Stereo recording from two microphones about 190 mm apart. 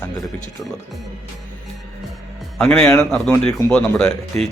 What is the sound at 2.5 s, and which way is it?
A man's voice, 5° left (ahead or behind).